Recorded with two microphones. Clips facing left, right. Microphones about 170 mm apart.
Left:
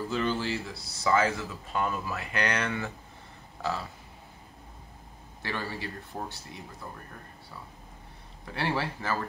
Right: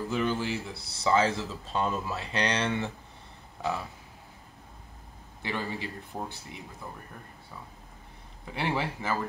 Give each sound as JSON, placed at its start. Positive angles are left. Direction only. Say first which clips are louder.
{"t": 0.1, "sound": "speech", "louder": "right 1 dB", "side_deg": -15}
{"t": 5.4, "sound": "speech", "louder": "right 1 dB", "side_deg": -20}
{"t": 6.1, "sound": "speech", "louder": "right 1 dB", "side_deg": -5}
{"t": 8.5, "sound": "speech", "louder": "even", "side_deg": -15}